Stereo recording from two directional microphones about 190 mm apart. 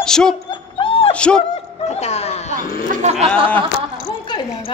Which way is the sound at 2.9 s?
35° right (ahead or behind).